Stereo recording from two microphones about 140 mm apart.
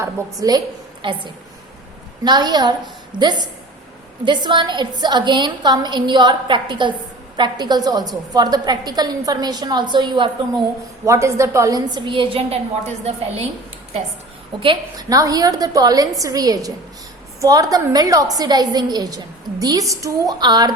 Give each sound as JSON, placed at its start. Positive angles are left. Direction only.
{"t": 0.0, "sound": "a woman's voice", "side_deg": -25}
{"t": 2.2, "sound": "a woman's voice", "side_deg": -30}
{"t": 11.0, "sound": "a woman's voice", "side_deg": -20}
{"t": 13.1, "sound": "a woman's voice", "side_deg": -50}
{"t": 14.6, "sound": "a woman's voice", "side_deg": -30}